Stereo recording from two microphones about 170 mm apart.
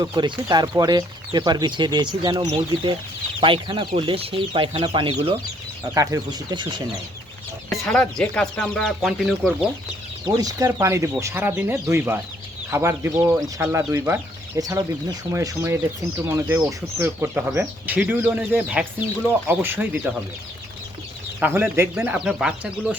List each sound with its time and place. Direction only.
0.0 s speech: 25° right (ahead or behind)
5.8 s speech: 20° right (ahead or behind)
7.7 s speech: 5° left (ahead or behind)
10.2 s speech: 20° right (ahead or behind)
21.4 s speech: 15° right (ahead or behind)